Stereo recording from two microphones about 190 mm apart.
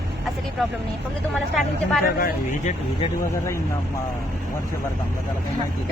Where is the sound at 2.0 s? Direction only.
50° left (ahead or behind).